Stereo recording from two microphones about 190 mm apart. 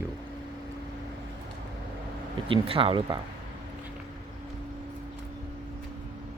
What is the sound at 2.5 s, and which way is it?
Speech, 30° right (ahead or behind).